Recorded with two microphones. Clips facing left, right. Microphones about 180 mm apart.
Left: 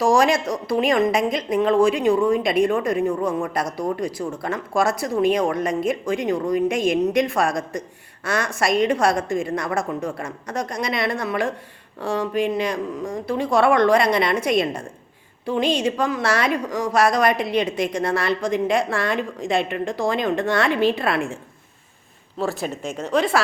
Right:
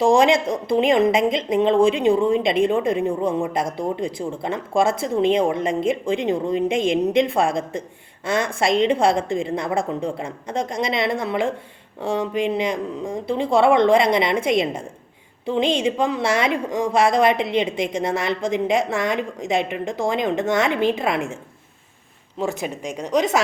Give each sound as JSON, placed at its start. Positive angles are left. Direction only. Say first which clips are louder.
{"t": 0.0, "sound": "a woman's voice", "louder": "right 2 dB", "side_deg": -25}
{"t": 22.4, "sound": "a woman's voice", "louder": "even", "side_deg": -15}